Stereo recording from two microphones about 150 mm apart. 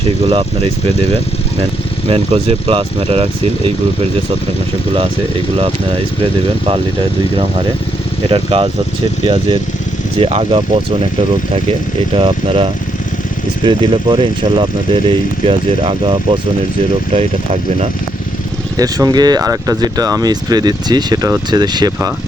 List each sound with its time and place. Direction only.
2.0 s speech: 40° right (ahead or behind)
8.3 s speech: 40° right (ahead or behind)
12.1 s speech: 40° right (ahead or behind)
18.8 s speech: 25° right (ahead or behind)